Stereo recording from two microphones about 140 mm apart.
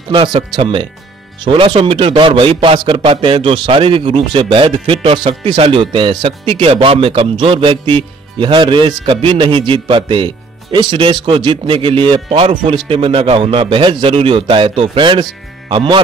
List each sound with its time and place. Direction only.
0.1 s speech: 35° right (ahead or behind)